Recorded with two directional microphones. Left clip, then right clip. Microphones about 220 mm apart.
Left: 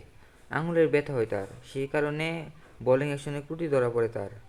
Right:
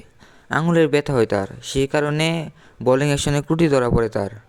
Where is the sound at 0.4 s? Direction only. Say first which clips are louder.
Right 7 dB; 45° right (ahead or behind).